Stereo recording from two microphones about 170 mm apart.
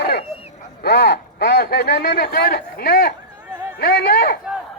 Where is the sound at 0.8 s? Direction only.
65° left (ahead or behind).